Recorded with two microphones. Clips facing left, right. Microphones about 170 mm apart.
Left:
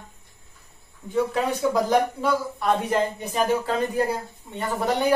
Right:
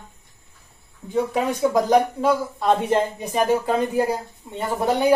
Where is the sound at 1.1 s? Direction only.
15° right (ahead or behind).